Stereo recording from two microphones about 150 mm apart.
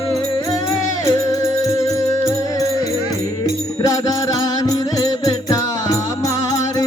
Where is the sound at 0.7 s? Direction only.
20° left (ahead or behind).